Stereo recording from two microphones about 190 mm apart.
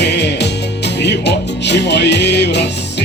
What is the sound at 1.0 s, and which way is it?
Music, 65° left (ahead or behind).